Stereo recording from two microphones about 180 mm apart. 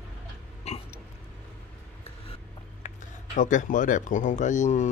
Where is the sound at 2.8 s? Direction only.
45° left (ahead or behind).